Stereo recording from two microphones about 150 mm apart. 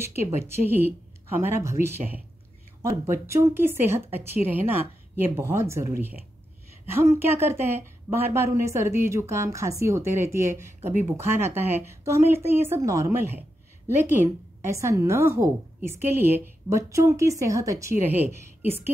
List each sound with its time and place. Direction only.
0.0 s a woman's voice: 15° right (ahead or behind)